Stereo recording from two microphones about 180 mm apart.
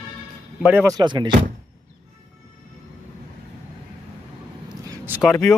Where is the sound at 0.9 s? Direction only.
25° right (ahead or behind).